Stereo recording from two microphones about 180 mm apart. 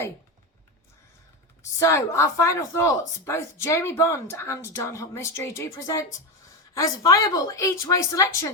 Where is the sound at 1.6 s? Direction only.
15° left (ahead or behind).